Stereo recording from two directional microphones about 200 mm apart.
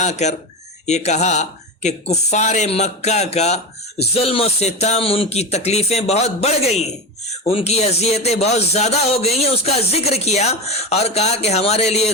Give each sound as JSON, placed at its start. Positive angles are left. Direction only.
{"t": 0.0, "sound": "speech", "side_deg": 35}